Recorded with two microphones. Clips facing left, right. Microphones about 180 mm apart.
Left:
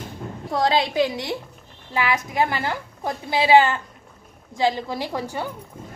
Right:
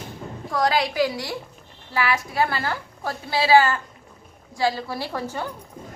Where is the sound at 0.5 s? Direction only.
25° left (ahead or behind).